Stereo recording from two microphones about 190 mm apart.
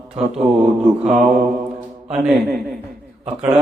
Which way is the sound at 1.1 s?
Centre (ahead or behind).